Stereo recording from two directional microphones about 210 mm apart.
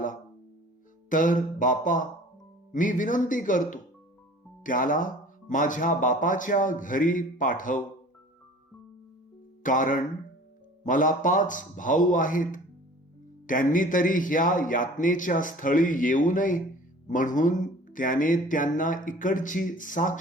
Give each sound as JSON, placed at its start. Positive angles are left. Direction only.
{"t": 1.1, "sound": "speech", "side_deg": 40}
{"t": 9.6, "sound": "speech", "side_deg": 40}